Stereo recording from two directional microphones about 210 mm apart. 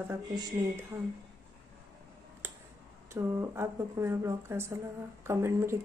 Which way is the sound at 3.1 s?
15° right (ahead or behind).